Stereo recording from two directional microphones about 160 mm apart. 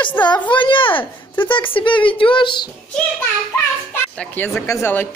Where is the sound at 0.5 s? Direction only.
30° left (ahead or behind).